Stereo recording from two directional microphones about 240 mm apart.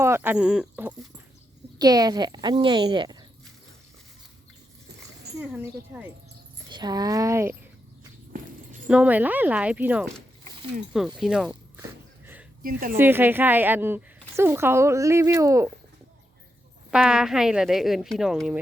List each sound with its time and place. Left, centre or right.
0.0 s a woman's voice: centre
5.4 s a woman's voice: centre
8.9 s speech: centre
12.2 s a sound: centre
12.6 s a woman's voice: right
13.0 s a woman's voice: centre
16.9 s speech: centre